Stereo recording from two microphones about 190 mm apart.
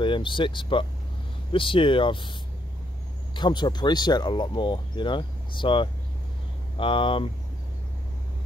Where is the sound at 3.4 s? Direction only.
25° left (ahead or behind).